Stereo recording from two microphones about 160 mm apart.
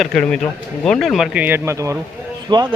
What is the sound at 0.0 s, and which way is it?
Speech, 5° left (ahead or behind).